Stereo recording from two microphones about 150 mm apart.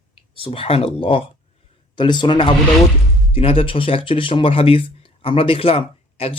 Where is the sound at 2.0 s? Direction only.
30° left (ahead or behind).